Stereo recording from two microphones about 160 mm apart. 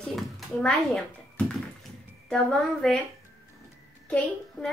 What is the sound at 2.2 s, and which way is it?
Speech, 5° left (ahead or behind).